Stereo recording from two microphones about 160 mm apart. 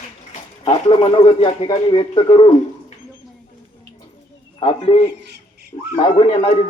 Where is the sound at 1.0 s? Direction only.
35° left (ahead or behind).